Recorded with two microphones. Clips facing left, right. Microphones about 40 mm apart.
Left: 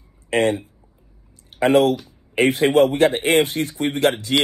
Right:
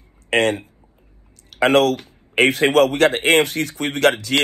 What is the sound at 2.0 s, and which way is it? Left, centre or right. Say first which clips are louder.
Speech: right 2 dB; right.